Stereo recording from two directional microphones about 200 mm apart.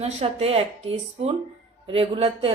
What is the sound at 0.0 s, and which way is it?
A woman's voice, 30° right (ahead or behind).